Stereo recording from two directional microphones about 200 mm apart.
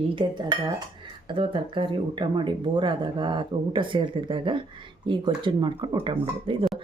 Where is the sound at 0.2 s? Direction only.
20° right (ahead or behind).